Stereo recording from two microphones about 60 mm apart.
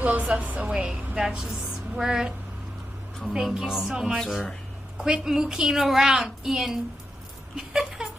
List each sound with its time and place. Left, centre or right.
0.0 s a woman's voice: right
1.6 s music: centre
3.3 s a woman's voice: centre
4.9 s a woman's voice: centre
7.5 s a sound: centre